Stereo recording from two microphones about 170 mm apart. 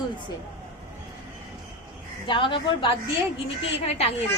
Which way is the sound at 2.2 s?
30° left (ahead or behind).